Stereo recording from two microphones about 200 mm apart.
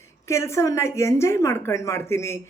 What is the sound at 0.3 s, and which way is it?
A woman's voice, 15° left (ahead or behind).